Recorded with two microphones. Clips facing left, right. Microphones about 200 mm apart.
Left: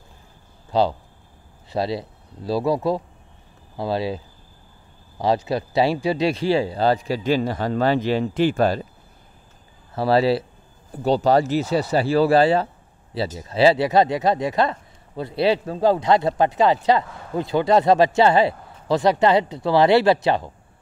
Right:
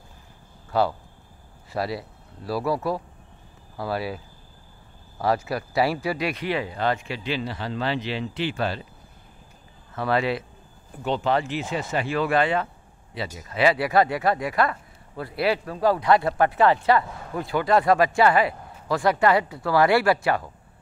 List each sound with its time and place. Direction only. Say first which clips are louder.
0.7 s speech: left 3 dB; 20° left (ahead or behind)
5.2 s speech: left 3 dB; 25° left (ahead or behind); by 8.8 s 45° left (ahead or behind)
9.9 s speech: left 6 dB; 30° left (ahead or behind)